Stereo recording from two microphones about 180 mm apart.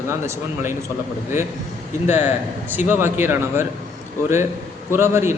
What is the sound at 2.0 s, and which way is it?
Speech, 40° left (ahead or behind).